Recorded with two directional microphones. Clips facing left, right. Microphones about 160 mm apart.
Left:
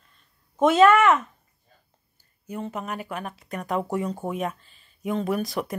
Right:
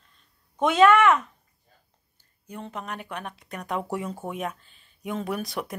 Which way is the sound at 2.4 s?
5° left (ahead or behind).